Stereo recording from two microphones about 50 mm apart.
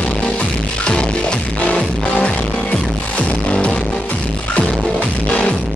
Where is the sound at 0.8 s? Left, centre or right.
Centre.